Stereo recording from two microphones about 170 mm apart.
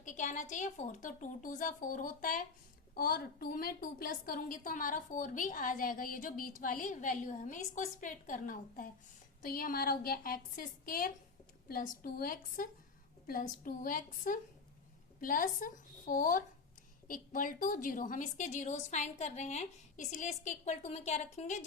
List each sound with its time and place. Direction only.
0.0 s a woman's voice: 45° left (ahead or behind)